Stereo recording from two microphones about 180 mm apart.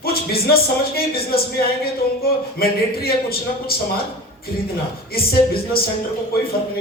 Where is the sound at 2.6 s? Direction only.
55° left (ahead or behind).